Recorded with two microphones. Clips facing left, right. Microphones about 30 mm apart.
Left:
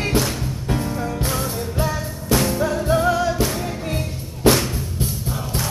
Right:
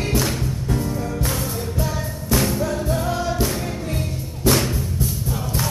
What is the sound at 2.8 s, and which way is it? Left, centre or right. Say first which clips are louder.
Music: left 5 dB; left.